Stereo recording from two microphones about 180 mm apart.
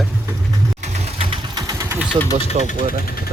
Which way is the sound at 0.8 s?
35° right (ahead or behind).